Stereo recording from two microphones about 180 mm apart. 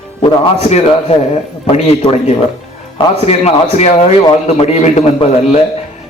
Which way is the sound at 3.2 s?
35° left (ahead or behind).